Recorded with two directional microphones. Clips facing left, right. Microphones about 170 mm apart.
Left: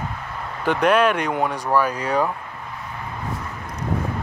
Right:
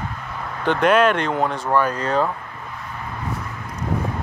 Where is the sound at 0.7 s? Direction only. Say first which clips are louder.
Right 1 dB; 5° left (ahead or behind).